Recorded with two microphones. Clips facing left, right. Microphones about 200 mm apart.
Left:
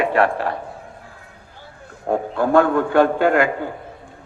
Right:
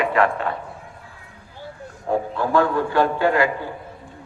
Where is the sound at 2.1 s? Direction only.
55° left (ahead or behind).